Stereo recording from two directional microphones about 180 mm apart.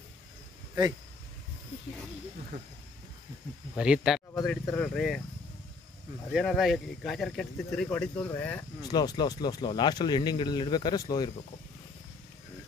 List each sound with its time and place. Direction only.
3.7 s speech: 5° right (ahead or behind)
4.3 s speech: 15° left (ahead or behind)
6.3 s speech: centre (ahead or behind)
8.8 s speech: 20° left (ahead or behind)